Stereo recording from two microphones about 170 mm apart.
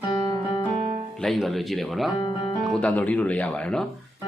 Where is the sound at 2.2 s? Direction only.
25° left (ahead or behind).